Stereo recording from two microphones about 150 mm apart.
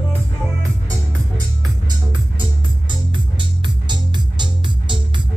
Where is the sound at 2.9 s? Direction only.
30° right (ahead or behind).